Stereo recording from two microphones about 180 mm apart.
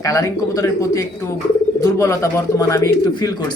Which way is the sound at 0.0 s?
15° left (ahead or behind).